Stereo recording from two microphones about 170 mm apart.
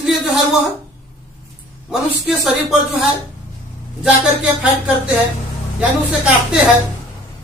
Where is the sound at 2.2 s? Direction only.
5° right (ahead or behind).